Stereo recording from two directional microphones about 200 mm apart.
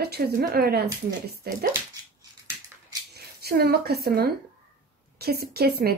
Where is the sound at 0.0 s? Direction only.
50° right (ahead or behind).